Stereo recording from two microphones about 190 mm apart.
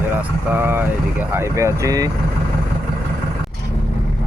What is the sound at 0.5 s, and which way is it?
Speech, 10° right (ahead or behind).